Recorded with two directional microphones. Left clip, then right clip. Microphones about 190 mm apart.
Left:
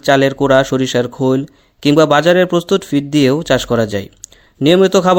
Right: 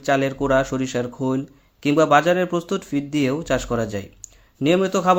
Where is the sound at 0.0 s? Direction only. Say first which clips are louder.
Left 9 dB; 40° left (ahead or behind).